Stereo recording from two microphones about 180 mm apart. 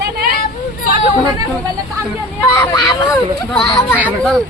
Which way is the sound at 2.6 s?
20° left (ahead or behind).